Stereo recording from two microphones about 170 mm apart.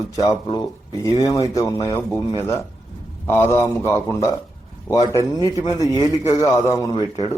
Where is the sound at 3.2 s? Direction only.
15° left (ahead or behind).